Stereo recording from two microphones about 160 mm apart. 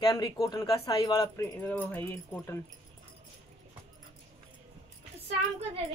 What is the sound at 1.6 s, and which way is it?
Speech, 10° left (ahead or behind).